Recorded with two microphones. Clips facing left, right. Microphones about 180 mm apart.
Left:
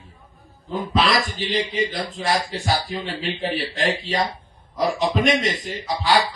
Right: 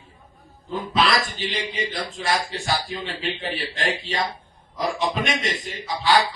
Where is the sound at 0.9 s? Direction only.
45° left (ahead or behind).